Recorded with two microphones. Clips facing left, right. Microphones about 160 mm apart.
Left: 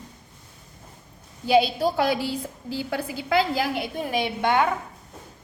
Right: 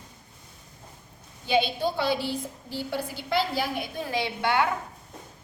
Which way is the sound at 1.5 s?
40° left (ahead or behind).